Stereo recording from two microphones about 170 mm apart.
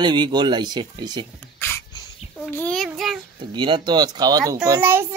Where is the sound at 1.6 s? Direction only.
15° left (ahead or behind).